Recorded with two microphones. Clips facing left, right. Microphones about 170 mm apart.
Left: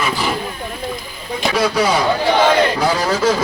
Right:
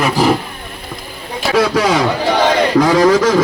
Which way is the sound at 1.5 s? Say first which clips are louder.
Right 4 dB; 90° right.